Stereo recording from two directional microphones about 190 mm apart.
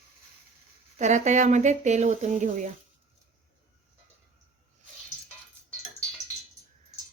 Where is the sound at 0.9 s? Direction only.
35° right (ahead or behind).